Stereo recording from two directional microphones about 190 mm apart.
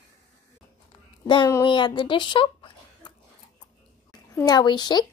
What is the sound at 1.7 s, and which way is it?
A woman's voice, 25° left (ahead or behind).